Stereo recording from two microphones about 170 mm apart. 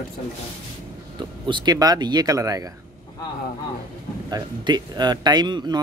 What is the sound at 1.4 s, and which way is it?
Speech, 25° right (ahead or behind).